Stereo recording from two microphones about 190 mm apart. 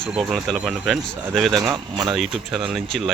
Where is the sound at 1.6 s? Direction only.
20° right (ahead or behind).